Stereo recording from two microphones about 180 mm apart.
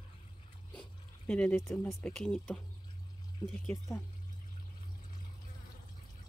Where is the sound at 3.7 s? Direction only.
15° left (ahead or behind).